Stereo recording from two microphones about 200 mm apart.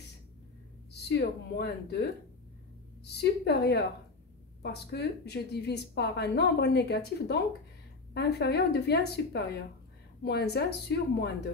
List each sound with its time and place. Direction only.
0.9 s speech: 55° left (ahead or behind)
3.2 s speech: 55° left (ahead or behind)
4.9 s speech: 55° left (ahead or behind)